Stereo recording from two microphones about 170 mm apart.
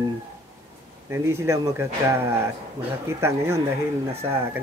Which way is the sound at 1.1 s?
15° right (ahead or behind).